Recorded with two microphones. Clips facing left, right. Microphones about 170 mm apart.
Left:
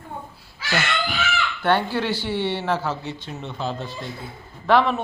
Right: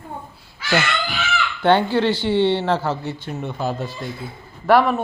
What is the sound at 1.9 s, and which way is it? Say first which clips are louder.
Speech: right 6 dB; 10° left (ahead or behind).